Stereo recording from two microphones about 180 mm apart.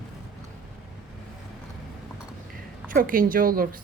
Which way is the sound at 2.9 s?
50° right (ahead or behind).